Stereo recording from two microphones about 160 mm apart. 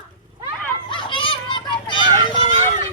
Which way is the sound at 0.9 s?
30° left (ahead or behind).